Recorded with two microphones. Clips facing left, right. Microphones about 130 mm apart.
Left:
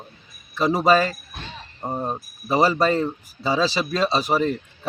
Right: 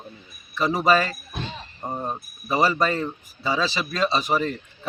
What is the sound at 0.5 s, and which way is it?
Speech, 30° left (ahead or behind).